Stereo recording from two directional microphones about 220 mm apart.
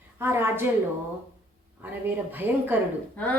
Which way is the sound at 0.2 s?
10° right (ahead or behind).